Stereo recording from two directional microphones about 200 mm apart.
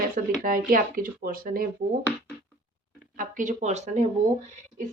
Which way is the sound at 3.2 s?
40° right (ahead or behind).